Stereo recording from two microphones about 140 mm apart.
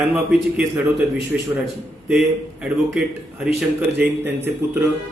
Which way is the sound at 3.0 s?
5° right (ahead or behind).